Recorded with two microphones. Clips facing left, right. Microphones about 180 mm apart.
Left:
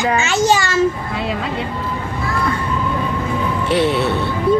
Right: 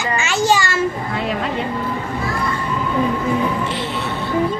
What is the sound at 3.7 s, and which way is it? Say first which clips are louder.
Speech: left 9 dB; 70° left (ahead or behind).